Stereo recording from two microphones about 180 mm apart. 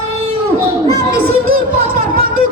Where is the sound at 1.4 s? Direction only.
55° right (ahead or behind).